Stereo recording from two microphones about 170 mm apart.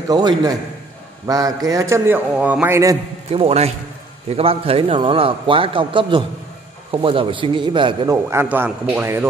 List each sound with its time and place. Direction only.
0.1 s a man's voice: 25° right (ahead or behind)
3.3 s a man's voice: 35° right (ahead or behind)
8.3 s a man's voice: 15° right (ahead or behind)